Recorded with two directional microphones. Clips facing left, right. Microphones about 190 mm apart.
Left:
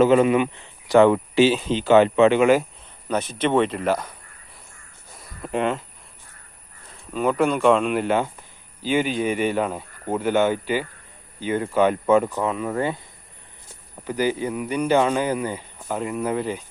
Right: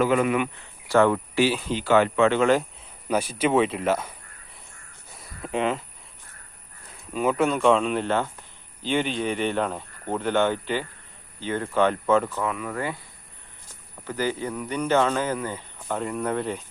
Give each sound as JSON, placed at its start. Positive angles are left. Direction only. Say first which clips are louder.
{"t": 0.0, "sound": "speech", "louder": "left 5 dB", "side_deg": 25}
{"t": 3.1, "sound": "speech", "louder": "left 1 dB", "side_deg": -10}
{"t": 5.4, "sound": "speech", "louder": "left 2 dB", "side_deg": 0}
{"t": 7.1, "sound": "speech", "louder": "left 2 dB", "side_deg": -5}
{"t": 14.1, "sound": "speech", "louder": "left 4 dB", "side_deg": 15}